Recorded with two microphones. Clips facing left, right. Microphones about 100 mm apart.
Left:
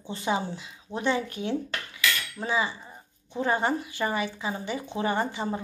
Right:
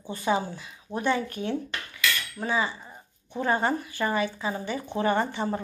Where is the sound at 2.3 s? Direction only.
20° left (ahead or behind).